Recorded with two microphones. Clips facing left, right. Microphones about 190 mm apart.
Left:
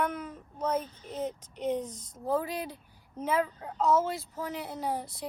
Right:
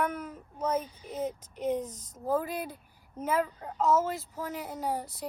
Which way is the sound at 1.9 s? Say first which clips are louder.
Left 2 dB; 35° left (ahead or behind).